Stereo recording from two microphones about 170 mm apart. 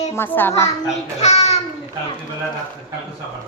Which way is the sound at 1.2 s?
40° left (ahead or behind).